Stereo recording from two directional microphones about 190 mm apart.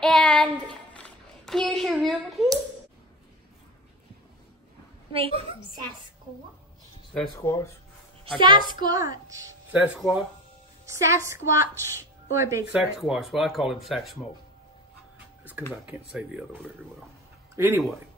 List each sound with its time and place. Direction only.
0.0 s child singing: 5° left (ahead or behind)
5.1 s a woman's voice: 25° right (ahead or behind)
7.3 s speech: 15° left (ahead or behind)
8.4 s a woman's voice: 25° right (ahead or behind)
9.5 s speech: 10° right (ahead or behind)
10.9 s a woman's voice: 15° right (ahead or behind)
13.0 s speech: centre (ahead or behind)
15.8 s a woman's voice: 5° right (ahead or behind)